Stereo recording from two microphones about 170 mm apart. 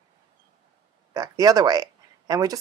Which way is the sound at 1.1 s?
20° right (ahead or behind).